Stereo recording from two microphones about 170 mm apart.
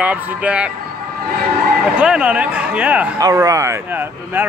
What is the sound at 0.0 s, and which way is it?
Speech, 10° right (ahead or behind).